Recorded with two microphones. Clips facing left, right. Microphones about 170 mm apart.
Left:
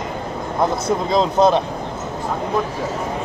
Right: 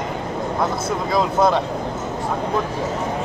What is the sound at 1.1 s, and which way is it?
Speech, 20° left (ahead or behind).